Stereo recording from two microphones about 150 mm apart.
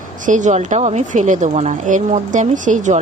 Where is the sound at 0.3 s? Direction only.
55° right (ahead or behind).